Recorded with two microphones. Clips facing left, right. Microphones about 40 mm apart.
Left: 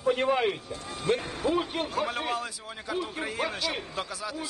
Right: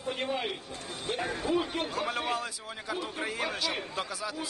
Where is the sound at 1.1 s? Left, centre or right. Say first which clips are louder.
Left 6 dB; left.